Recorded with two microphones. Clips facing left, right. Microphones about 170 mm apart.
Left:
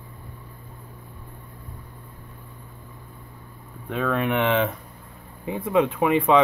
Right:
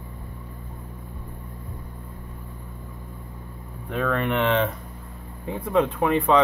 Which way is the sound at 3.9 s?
5° left (ahead or behind).